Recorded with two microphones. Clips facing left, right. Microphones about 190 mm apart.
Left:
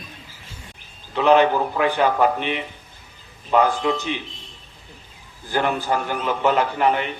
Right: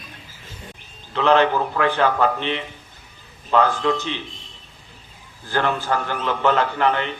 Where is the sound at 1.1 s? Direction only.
15° left (ahead or behind).